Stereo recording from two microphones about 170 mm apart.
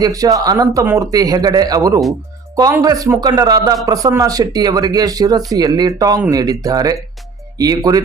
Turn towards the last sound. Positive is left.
turn(degrees=-20)  # may be behind; listen again after turning